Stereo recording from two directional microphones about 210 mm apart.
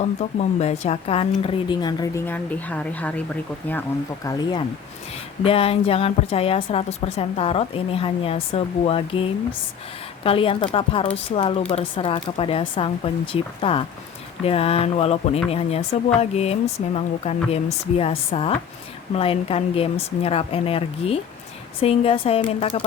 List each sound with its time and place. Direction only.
0.0 s a woman's voice: 35° left (ahead or behind)
10.2 s a woman's voice: 25° left (ahead or behind)